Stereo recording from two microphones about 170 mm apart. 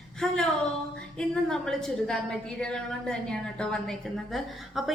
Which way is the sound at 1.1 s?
5° left (ahead or behind).